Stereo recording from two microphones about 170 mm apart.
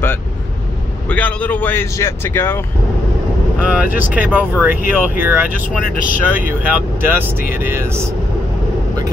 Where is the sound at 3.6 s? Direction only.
10° right (ahead or behind).